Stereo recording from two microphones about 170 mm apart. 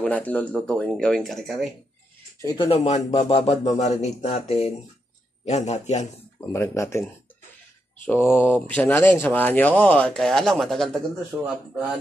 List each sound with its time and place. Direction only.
0.0 s speech: 10° left (ahead or behind)
2.4 s speech: 30° left (ahead or behind)
6.4 s speech: 15° left (ahead or behind)
8.1 s speech: 15° left (ahead or behind)